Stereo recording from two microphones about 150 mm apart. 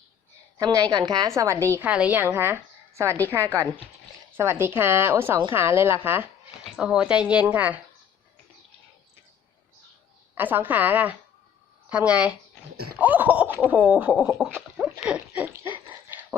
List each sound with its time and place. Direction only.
0.5 s a woman's voice: 20° right (ahead or behind)
1.7 s a woman's voice: 10° right (ahead or behind)
10.3 s a woman's voice: 10° right (ahead or behind)
14.5 s a sound: centre (ahead or behind)
15.4 s dog: 15° right (ahead or behind)